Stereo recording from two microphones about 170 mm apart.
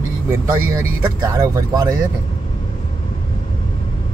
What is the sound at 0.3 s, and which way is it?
Speech, 15° right (ahead or behind).